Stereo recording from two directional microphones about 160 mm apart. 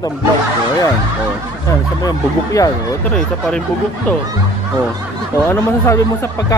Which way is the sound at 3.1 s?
5° left (ahead or behind).